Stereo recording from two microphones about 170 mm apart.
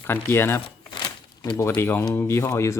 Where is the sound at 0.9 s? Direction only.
25° left (ahead or behind).